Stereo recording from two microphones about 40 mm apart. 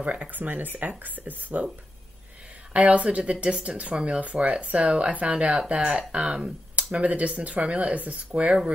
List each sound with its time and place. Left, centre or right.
0.0 s speech: right
2.7 s speech: right